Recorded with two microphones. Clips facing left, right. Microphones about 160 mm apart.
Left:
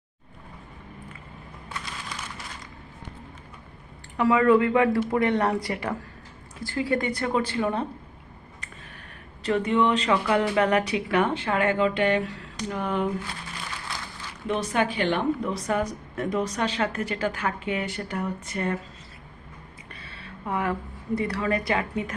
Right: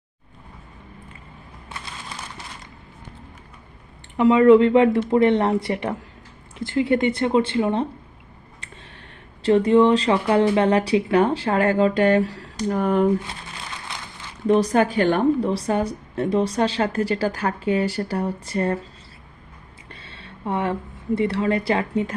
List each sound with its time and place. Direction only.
4.2 s speech: 20° right (ahead or behind)
9.4 s speech: 30° right (ahead or behind); by 13.1 s 45° right (ahead or behind)
14.4 s speech: 40° right (ahead or behind)
15.4 s speech: 30° right (ahead or behind)
19.9 s a sound: 25° right (ahead or behind)
21.2 s speech: 25° right (ahead or behind)